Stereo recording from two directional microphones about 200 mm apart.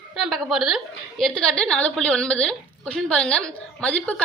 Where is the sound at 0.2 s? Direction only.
Centre (ahead or behind).